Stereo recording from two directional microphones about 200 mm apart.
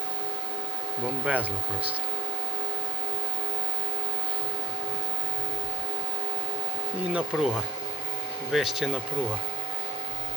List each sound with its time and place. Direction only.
1.0 s speech: 5° right (ahead or behind)
7.1 s speech: 5° right (ahead or behind)
8.5 s speech: centre (ahead or behind)